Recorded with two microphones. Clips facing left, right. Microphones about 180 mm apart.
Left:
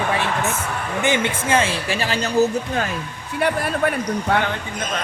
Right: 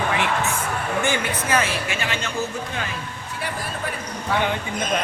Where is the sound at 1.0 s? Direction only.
25° left (ahead or behind); by 2.9 s 40° left (ahead or behind).